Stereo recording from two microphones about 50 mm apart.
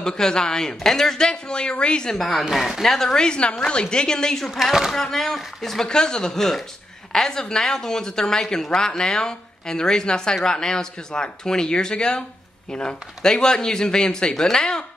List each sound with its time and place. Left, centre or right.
0.0 s a woman's voice: centre
2.1 s a woman's voice: centre
5.9 s a woman's voice: centre